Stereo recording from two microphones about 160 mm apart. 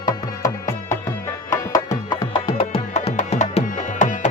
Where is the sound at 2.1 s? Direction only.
25° left (ahead or behind).